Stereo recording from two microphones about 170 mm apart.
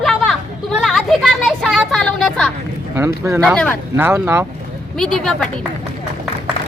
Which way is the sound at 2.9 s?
15° right (ahead or behind).